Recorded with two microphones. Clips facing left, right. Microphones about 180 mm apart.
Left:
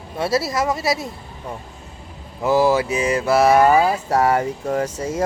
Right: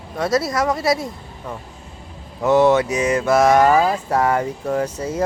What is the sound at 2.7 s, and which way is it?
Speech, 30° left (ahead or behind).